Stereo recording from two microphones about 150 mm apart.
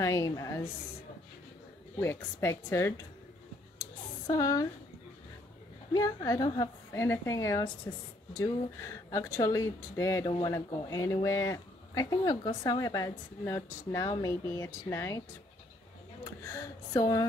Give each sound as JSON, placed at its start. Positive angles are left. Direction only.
{"t": 0.0, "sound": "speech", "side_deg": 20}
{"t": 2.0, "sound": "a woman's voice", "side_deg": 15}
{"t": 4.3, "sound": "speech", "side_deg": 25}
{"t": 5.9, "sound": "speech", "side_deg": 20}
{"t": 9.1, "sound": "speech", "side_deg": 20}
{"t": 16.4, "sound": "speech", "side_deg": 20}